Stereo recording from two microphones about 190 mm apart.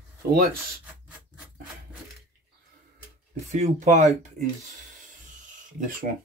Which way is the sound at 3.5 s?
40° right (ahead or behind).